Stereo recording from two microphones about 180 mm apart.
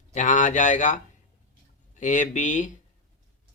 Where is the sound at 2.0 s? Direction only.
45° left (ahead or behind).